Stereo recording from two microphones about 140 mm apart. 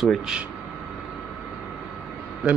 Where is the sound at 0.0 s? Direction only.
Centre (ahead or behind).